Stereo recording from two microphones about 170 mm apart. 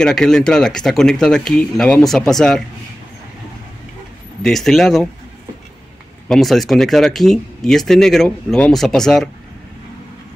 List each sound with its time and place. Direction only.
0.0 s speech: 5° left (ahead or behind)
4.4 s speech: centre (ahead or behind)
6.2 s speech: centre (ahead or behind)